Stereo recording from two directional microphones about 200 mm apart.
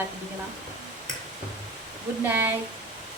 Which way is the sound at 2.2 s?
10° right (ahead or behind).